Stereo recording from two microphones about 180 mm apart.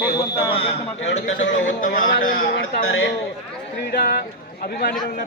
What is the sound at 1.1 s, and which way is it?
Speech, 90° left.